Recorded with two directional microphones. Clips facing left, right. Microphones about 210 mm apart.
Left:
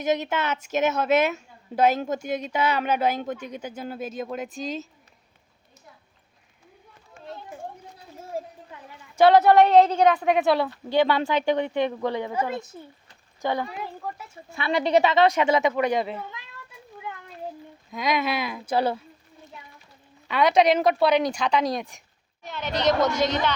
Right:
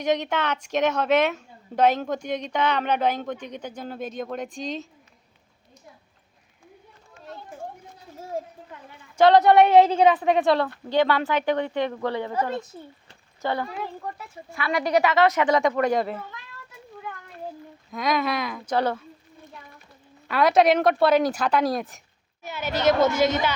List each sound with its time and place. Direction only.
0.0 s a woman's voice: 5° left (ahead or behind)
9.1 s a woman's voice: 5° left (ahead or behind)
14.5 s a woman's voice: 25° left (ahead or behind)
15.5 s a woman's voice: 5° left (ahead or behind)
17.9 s a woman's voice: centre (ahead or behind)
20.2 s a woman's voice: centre (ahead or behind)